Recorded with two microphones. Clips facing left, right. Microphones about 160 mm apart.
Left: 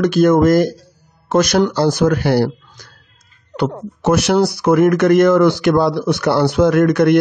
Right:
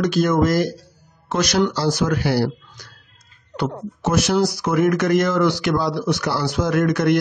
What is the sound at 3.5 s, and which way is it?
Speech, 65° left (ahead or behind).